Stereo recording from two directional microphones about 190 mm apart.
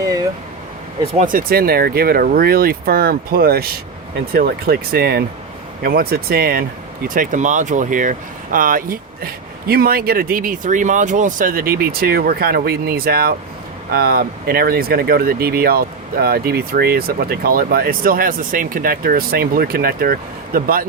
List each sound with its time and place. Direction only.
1.2 s speech: 45° right (ahead or behind)